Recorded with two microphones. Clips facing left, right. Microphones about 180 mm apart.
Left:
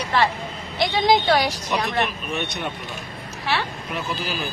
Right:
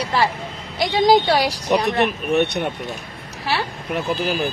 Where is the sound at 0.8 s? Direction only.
35° right (ahead or behind).